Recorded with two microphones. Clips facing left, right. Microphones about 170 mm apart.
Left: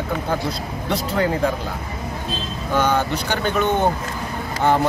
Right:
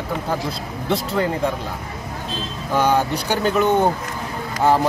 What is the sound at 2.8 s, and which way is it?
Speech, 35° right (ahead or behind).